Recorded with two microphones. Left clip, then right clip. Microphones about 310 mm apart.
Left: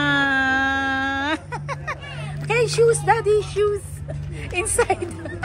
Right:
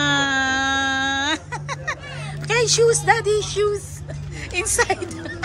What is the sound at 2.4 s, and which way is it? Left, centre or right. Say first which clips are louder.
Speech: right 1 dB; centre.